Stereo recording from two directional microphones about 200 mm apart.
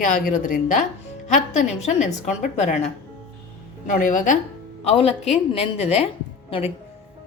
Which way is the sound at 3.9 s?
40° left (ahead or behind).